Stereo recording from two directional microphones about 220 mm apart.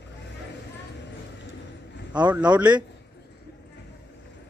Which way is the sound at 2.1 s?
5° right (ahead or behind).